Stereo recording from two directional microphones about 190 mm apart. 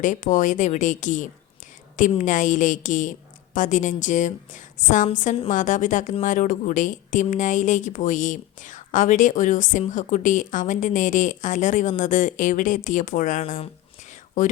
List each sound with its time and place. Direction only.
0.0 s a woman's voice: 45° left (ahead or behind)